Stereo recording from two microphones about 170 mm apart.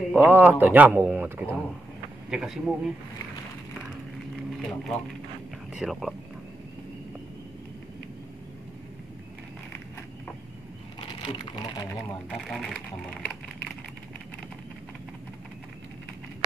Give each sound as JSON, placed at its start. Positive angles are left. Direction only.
{"t": 0.1, "sound": "a man's voice", "side_deg": -10}
{"t": 4.5, "sound": "speech", "side_deg": 0}
{"t": 11.0, "sound": "speech", "side_deg": 25}
{"t": 12.3, "sound": "speech", "side_deg": 0}